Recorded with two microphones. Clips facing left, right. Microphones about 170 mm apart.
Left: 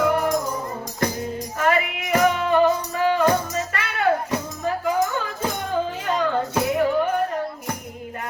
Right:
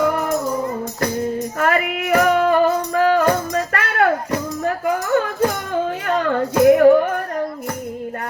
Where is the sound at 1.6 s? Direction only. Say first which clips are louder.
Right 1 dB; 50° right (ahead or behind).